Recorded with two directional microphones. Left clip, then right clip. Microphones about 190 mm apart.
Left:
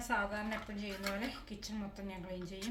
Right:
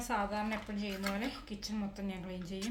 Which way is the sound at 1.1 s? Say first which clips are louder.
Right 2 dB; 25° right (ahead or behind).